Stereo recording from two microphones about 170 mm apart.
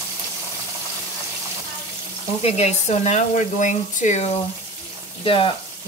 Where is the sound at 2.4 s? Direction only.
40° left (ahead or behind).